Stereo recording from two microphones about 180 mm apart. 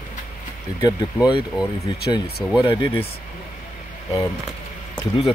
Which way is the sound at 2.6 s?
25° left (ahead or behind).